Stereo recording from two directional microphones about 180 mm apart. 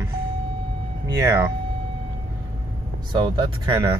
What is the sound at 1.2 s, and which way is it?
Speech, 15° right (ahead or behind).